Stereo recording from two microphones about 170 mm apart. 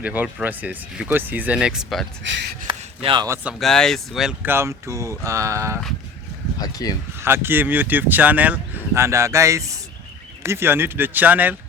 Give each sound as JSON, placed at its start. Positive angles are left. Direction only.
{"t": 0.0, "sound": "speech", "side_deg": -10}
{"t": 2.2, "sound": "speech", "side_deg": -90}
{"t": 2.6, "sound": "a sound", "side_deg": -30}
{"t": 3.2, "sound": "speech", "side_deg": -15}
{"t": 3.6, "sound": "speech", "side_deg": 5}
{"t": 6.6, "sound": "speech", "side_deg": 20}
{"t": 7.2, "sound": "speech", "side_deg": -15}